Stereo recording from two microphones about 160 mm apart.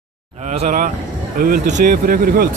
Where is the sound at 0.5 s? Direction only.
55° right (ahead or behind).